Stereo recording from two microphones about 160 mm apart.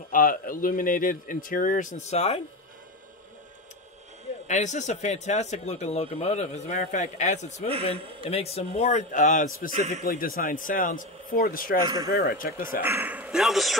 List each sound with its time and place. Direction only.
0.1 s speech: 60° left (ahead or behind); by 2.4 s 40° left (ahead or behind)
4.5 s speech: 50° left (ahead or behind)
7.9 s a man's voice: 35° right (ahead or behind)
8.3 s speech: 40° left (ahead or behind)
10.1 s speech: 65° left (ahead or behind)
12.8 s a man's voice: 10° right (ahead or behind)